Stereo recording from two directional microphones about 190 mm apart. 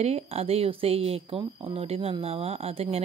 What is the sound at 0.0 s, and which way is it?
Speech, 35° right (ahead or behind).